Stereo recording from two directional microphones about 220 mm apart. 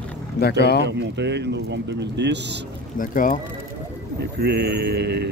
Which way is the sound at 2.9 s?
40° left (ahead or behind).